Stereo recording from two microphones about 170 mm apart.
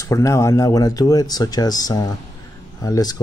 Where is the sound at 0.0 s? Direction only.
20° left (ahead or behind).